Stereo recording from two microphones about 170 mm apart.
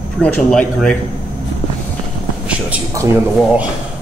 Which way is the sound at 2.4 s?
10° right (ahead or behind).